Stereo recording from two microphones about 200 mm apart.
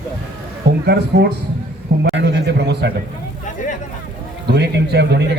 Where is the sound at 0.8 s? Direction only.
55° right (ahead or behind).